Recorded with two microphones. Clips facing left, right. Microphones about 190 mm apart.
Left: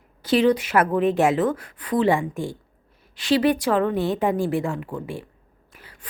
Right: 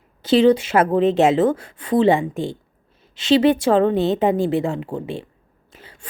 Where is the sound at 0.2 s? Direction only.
25° right (ahead or behind).